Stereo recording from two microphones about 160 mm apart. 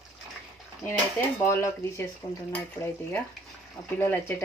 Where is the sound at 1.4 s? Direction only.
15° left (ahead or behind).